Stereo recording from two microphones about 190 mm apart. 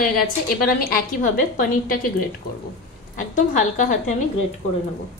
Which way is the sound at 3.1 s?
40° left (ahead or behind).